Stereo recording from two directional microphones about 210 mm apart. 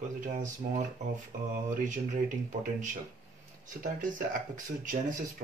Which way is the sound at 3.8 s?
40° right (ahead or behind).